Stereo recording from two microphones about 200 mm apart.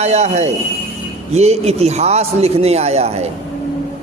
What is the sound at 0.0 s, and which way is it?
A man's voice, 35° right (ahead or behind).